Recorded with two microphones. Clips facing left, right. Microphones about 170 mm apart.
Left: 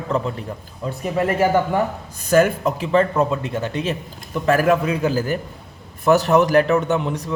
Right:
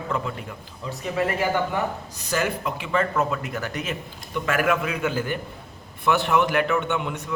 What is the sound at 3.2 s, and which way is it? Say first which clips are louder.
A man's voice: left 5 dB; 30° left (ahead or behind).